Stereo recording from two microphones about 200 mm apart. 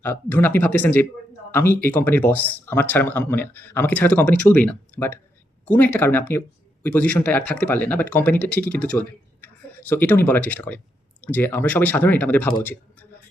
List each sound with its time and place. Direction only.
0.0 s speech: 10° left (ahead or behind)